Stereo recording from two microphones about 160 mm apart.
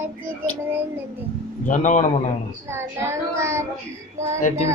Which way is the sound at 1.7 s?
50° left (ahead or behind).